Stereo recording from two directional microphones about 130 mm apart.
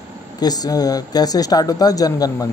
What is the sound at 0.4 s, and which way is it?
Speech, 30° left (ahead or behind).